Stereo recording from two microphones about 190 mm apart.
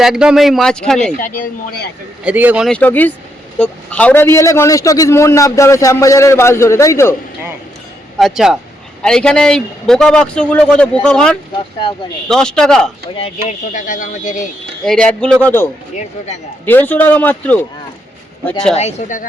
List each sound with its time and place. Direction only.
0.0 s a man's voice: 5° right (ahead or behind)
2.2 s speech: 10° right (ahead or behind)
2.6 s a man's voice: 10° left (ahead or behind)
8.2 s a man's voice: centre (ahead or behind)
13.1 s speech: 30° left (ahead or behind)
14.8 s a man's voice: 5° left (ahead or behind)
16.0 s speech: 35° left (ahead or behind)
16.6 s a man's voice: 10° left (ahead or behind)
18.7 s speech: 35° left (ahead or behind)